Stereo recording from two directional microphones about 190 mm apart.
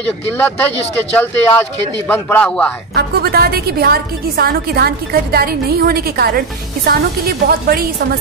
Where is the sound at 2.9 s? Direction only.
55° right (ahead or behind).